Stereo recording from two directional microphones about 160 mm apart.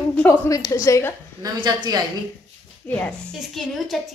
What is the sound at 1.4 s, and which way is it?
Speech, 25° right (ahead or behind).